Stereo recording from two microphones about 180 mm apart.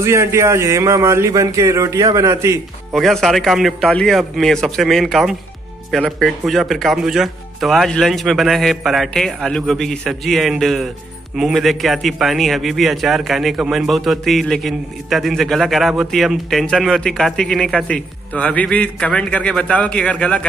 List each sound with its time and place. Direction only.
0.0 s a man's voice: 15° right (ahead or behind)
2.9 s a man's voice: centre (ahead or behind)